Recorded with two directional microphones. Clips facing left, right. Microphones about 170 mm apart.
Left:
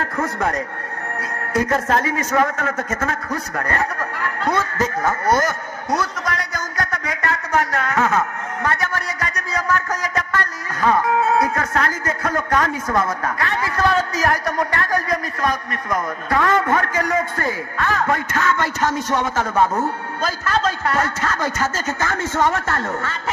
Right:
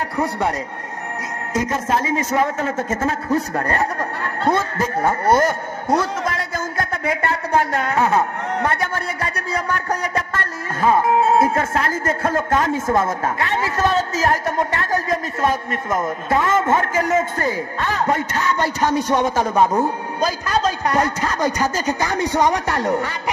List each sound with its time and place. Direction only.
0.0 s a man's voice: 15° right (ahead or behind)